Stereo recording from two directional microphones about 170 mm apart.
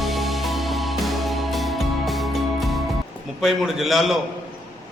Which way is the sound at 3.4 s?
Centre (ahead or behind).